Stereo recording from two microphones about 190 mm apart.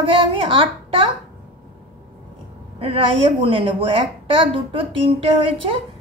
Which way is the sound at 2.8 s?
30° right (ahead or behind).